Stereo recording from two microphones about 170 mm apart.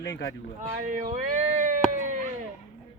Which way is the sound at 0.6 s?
50° right (ahead or behind).